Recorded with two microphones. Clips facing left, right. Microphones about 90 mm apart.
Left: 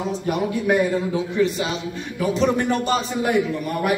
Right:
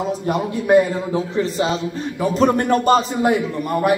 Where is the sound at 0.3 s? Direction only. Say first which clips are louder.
Right 5 dB; 30° right (ahead or behind).